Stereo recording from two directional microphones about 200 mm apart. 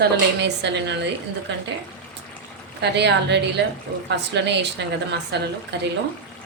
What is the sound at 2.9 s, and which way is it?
A woman's voice, 60° right (ahead or behind).